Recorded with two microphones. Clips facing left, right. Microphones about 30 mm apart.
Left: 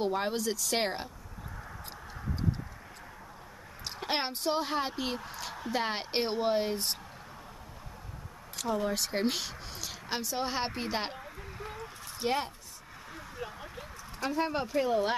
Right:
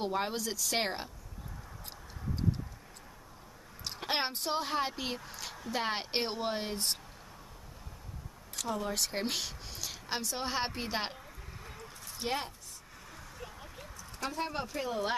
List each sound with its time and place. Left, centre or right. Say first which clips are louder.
0.0 s a woman's voice: left 3 dB; centre
3.8 s speech: left 1 dB; centre
5.2 s a sound: left 4 dB; centre
5.7 s a woman's voice: left 1 dB; centre
8.5 s speech: left 3 dB; centre
12.2 s a woman's voice: left 4 dB; centre
13.1 s a sound: left 7 dB; left
14.4 s speech: left 7 dB; centre